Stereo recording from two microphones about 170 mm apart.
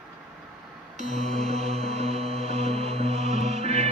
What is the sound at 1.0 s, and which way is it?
Mantra, 45° right (ahead or behind).